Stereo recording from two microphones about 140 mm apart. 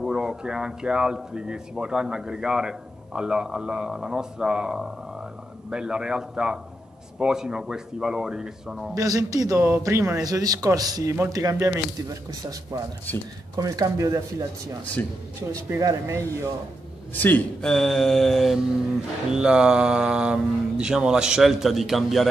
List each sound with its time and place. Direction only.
0.0 s speech: 5° right (ahead or behind)
8.9 s a man's voice: 25° right (ahead or behind)
13.1 s speech: 15° left (ahead or behind)
13.6 s a man's voice: 25° right (ahead or behind)
15.7 s a man's voice: 20° right (ahead or behind)
17.1 s speech: 15° left (ahead or behind)